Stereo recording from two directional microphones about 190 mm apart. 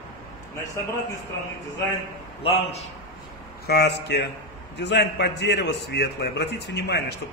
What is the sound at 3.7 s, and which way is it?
A man's voice, 60° left (ahead or behind).